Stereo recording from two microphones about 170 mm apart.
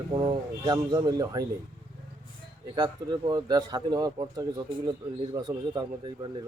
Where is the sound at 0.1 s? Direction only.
25° right (ahead or behind).